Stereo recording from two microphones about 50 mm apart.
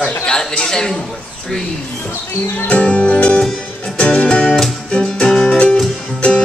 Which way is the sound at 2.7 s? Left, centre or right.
Left.